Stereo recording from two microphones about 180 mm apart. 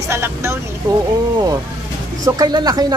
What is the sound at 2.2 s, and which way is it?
Speech, 20° right (ahead or behind).